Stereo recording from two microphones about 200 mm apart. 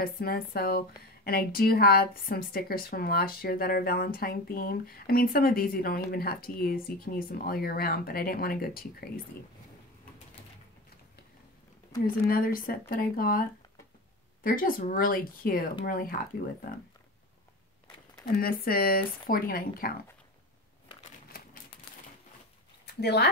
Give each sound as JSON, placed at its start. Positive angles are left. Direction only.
{"t": 0.0, "sound": "a woman's voice", "side_deg": 50}
{"t": 12.3, "sound": "a woman's voice", "side_deg": 45}
{"t": 14.4, "sound": "a woman's voice", "side_deg": 45}
{"t": 18.4, "sound": "a woman's voice", "side_deg": 50}
{"t": 22.8, "sound": "speech", "side_deg": 55}